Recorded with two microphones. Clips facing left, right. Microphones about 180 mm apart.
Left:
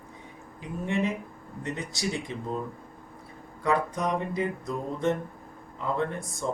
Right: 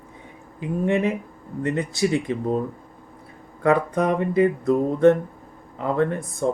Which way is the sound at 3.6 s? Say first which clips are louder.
Right 7 dB; 60° right (ahead or behind).